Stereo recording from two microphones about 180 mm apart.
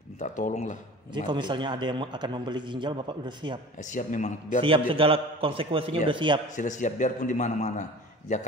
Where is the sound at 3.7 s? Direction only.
45° left (ahead or behind).